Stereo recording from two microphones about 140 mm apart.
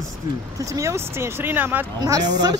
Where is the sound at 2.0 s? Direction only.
30° right (ahead or behind).